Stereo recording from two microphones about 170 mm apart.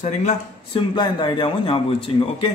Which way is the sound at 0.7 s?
25° left (ahead or behind).